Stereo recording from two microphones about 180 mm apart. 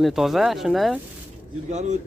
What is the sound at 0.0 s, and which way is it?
Speech, centre (ahead or behind).